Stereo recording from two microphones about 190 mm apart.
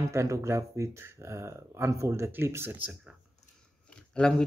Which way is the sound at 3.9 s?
5° left (ahead or behind).